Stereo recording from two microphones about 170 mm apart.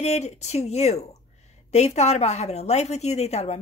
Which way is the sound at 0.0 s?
40° left (ahead or behind).